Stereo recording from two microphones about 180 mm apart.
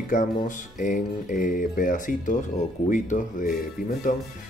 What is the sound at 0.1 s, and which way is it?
Speech, 45° left (ahead or behind).